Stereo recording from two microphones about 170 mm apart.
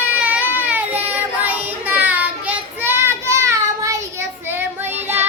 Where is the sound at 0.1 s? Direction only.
10° right (ahead or behind).